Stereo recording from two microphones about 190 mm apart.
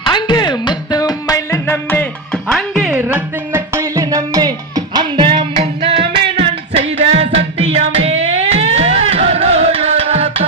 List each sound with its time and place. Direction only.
0.0 s music: 25° left (ahead or behind); by 10.4 s 30° right (ahead or behind)